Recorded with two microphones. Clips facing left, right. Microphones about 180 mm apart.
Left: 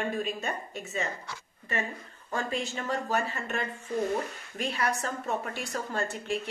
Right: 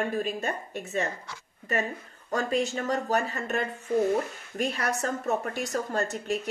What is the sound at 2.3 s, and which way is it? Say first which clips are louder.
A woman's voice: right 5 dB; 40° right (ahead or behind).